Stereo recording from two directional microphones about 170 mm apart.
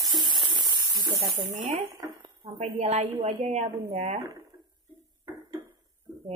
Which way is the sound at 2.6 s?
40° right (ahead or behind).